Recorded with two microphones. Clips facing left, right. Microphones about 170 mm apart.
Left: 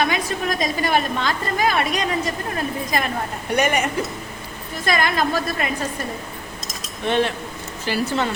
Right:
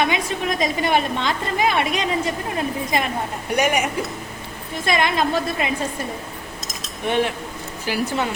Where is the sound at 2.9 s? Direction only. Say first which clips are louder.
Right 1 dB; 25° right (ahead or behind).